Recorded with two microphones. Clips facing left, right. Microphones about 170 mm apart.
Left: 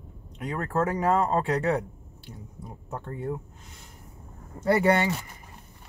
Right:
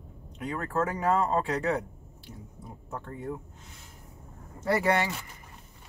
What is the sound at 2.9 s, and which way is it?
Speech, 35° left (ahead or behind).